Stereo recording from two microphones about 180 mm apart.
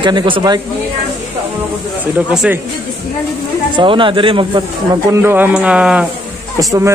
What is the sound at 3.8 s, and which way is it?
Speech, 30° right (ahead or behind).